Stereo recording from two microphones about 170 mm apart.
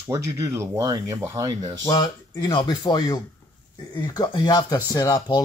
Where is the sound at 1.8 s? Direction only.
20° left (ahead or behind).